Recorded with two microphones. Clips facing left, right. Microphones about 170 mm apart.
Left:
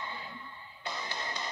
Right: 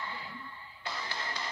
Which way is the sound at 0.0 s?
20° left (ahead or behind).